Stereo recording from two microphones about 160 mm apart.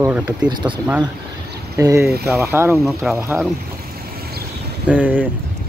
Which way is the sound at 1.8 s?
20° right (ahead or behind).